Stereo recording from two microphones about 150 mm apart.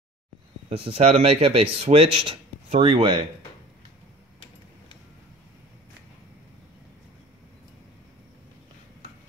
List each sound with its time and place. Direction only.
0.7 s speech: 40° right (ahead or behind)